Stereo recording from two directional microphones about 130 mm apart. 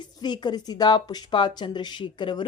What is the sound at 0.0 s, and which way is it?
Speech, 35° left (ahead or behind).